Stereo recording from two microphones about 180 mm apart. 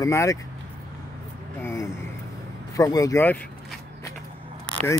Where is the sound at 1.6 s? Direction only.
15° left (ahead or behind).